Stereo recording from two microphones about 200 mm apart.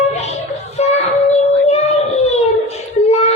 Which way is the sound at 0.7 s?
35° left (ahead or behind).